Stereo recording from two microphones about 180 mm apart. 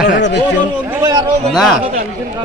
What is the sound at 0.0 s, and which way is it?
Speech, 70° left (ahead or behind).